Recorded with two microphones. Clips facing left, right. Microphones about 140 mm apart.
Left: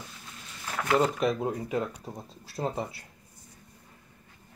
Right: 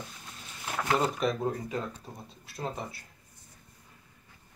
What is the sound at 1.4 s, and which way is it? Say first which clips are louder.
Speech: left 2 dB; 15° left (ahead or behind).